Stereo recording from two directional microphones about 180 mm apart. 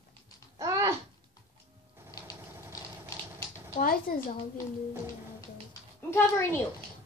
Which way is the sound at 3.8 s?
50° left (ahead or behind).